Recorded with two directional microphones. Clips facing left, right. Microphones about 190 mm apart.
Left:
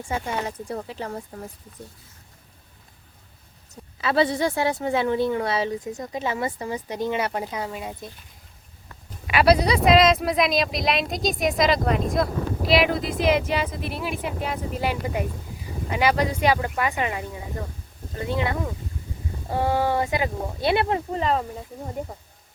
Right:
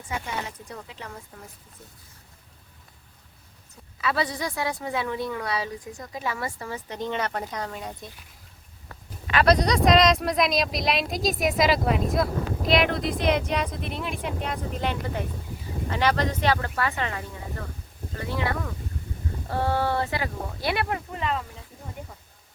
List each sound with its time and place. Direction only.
0.0 s speech: 35° left (ahead or behind)
4.0 s a woman's voice: 25° left (ahead or behind); by 8.1 s 5° left (ahead or behind)
9.2 s a woman's voice: 10° left (ahead or behind); by 21.4 s 35° left (ahead or behind)